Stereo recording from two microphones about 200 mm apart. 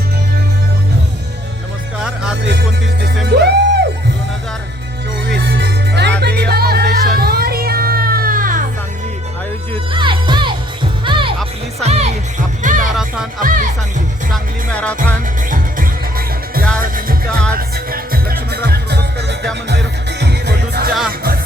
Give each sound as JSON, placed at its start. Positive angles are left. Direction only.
{"t": 2.0, "sound": "music", "side_deg": -5}
{"t": 2.4, "sound": "music", "side_deg": -55}
{"t": 5.3, "sound": "music", "side_deg": -60}
{"t": 9.9, "sound": "music", "side_deg": -25}
{"t": 12.9, "sound": "music", "side_deg": -5}
{"t": 13.4, "sound": "music", "side_deg": -40}
{"t": 14.3, "sound": "music", "side_deg": 5}
{"t": 15.4, "sound": "music", "side_deg": -45}